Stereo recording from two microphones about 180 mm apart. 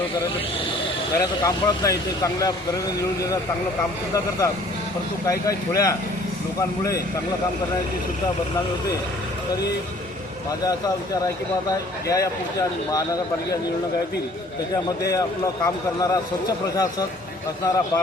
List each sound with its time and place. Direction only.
1.2 s speech: 20° left (ahead or behind)
5.2 s speech: 20° left (ahead or behind)
12.0 s speech: 20° left (ahead or behind)
16.7 s speech: 20° left (ahead or behind)